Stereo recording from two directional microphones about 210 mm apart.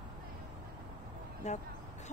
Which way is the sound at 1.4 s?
35° left (ahead or behind).